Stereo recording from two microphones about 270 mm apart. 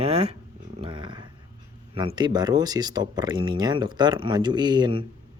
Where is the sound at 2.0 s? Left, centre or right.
Centre.